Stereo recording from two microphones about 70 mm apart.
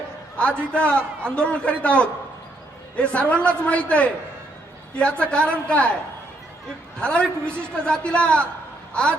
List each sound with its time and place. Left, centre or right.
0.3 s a man's voice: centre
7.0 s a man's voice: centre
8.9 s a sound: centre